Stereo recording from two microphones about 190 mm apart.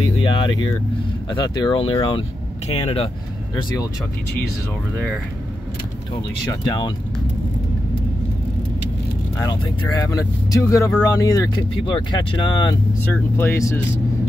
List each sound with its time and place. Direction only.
0.2 s speech: 25° left (ahead or behind)
4.9 s speech: 5° left (ahead or behind)
9.4 s speech: 20° left (ahead or behind)
13.0 s speech: 10° left (ahead or behind)